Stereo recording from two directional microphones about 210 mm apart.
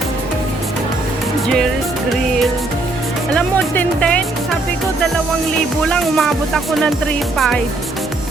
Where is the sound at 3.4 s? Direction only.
10° left (ahead or behind).